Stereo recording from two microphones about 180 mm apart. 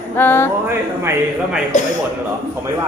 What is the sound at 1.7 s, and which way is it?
Speech, 40° left (ahead or behind).